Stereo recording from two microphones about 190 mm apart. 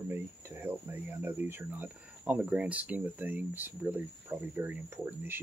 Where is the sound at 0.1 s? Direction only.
10° right (ahead or behind).